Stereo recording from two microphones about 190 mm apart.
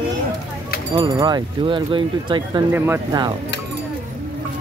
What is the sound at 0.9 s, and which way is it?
Speech, 20° right (ahead or behind).